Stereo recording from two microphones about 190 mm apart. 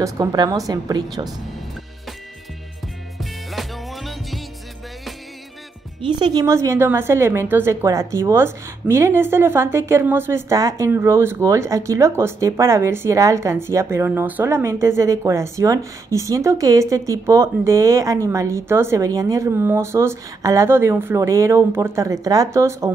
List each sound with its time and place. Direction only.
0.0 s a woman's voice: 20° right (ahead or behind)
3.2 s music: centre (ahead or behind)
5.9 s a woman's voice: 25° right (ahead or behind)